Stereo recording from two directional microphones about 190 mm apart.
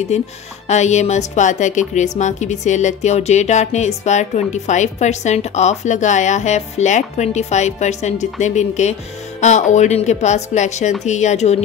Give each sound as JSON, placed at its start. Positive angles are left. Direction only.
{"t": 0.1, "sound": "speech", "side_deg": 35}